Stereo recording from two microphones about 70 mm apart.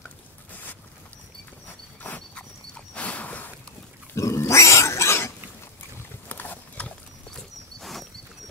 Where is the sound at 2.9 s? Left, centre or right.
Centre.